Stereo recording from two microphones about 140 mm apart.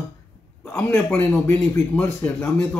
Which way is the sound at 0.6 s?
15° left (ahead or behind).